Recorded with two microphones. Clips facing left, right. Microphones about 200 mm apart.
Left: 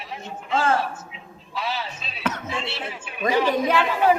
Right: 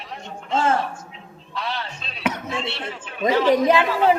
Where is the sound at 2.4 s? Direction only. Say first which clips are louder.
Right 2 dB; centre (ahead or behind).